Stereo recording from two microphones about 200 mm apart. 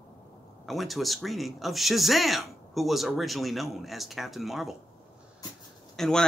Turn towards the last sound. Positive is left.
turn(degrees=0)  # may be behind; listen again after turning